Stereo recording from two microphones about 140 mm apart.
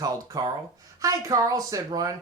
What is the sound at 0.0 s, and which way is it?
Speech, 25° right (ahead or behind).